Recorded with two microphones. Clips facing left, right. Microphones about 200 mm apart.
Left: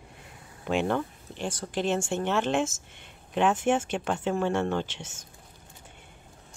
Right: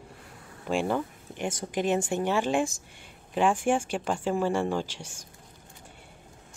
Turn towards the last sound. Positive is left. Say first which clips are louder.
# even
turn(degrees=-10)  # may be behind; listen again after turning